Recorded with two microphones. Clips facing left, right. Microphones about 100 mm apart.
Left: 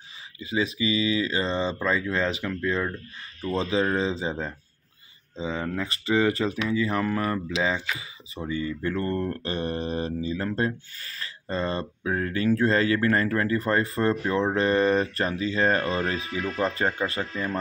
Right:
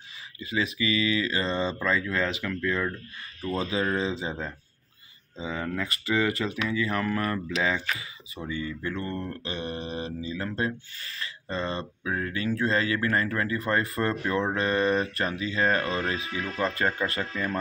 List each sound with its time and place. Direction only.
0.4 s speech: 25° left (ahead or behind)